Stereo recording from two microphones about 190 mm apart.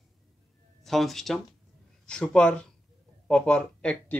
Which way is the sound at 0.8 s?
Centre (ahead or behind).